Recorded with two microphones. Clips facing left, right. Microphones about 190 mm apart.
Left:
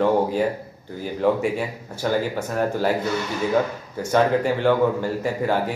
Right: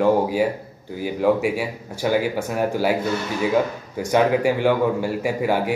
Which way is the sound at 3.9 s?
10° right (ahead or behind).